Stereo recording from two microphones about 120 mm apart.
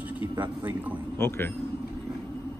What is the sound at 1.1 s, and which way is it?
Speech, 20° left (ahead or behind).